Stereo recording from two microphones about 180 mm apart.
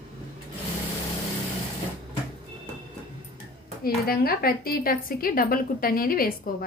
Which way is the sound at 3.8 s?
55° left (ahead or behind).